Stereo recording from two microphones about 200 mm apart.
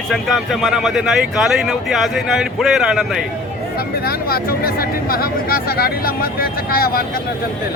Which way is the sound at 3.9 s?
50° left (ahead or behind).